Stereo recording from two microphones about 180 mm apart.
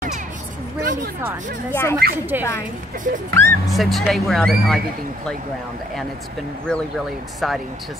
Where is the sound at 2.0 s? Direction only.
55° right (ahead or behind).